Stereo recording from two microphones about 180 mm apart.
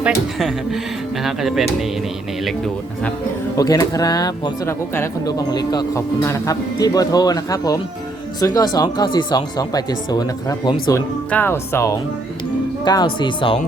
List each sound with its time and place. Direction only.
0.0 s speech: 5° right (ahead or behind)
3.6 s speech: 20° left (ahead or behind)